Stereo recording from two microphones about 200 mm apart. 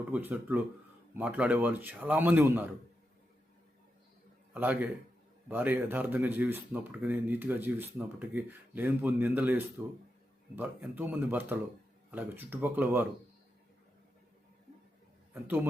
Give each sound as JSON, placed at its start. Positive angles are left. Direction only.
{"t": 0.1, "sound": "speech", "side_deg": -10}
{"t": 4.5, "sound": "speech", "side_deg": -10}
{"t": 15.3, "sound": "a man's voice", "side_deg": -10}